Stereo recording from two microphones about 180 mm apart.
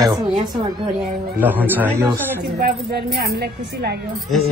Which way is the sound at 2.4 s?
65° right (ahead or behind).